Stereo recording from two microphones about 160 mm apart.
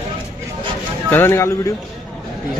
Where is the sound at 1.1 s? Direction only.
15° left (ahead or behind).